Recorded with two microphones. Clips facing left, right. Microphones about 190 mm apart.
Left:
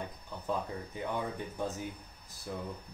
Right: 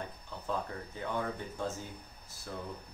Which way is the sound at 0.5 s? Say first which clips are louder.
Left 1 dB; 15° left (ahead or behind).